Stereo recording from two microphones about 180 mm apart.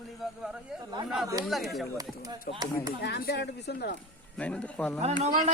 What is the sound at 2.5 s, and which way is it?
Speech, 55° left (ahead or behind).